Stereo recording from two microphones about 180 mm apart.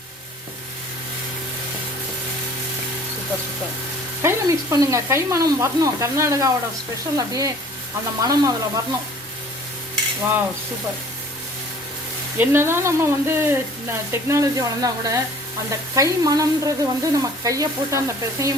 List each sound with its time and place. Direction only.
4.2 s speech: 15° right (ahead or behind)
12.4 s speech: 15° right (ahead or behind)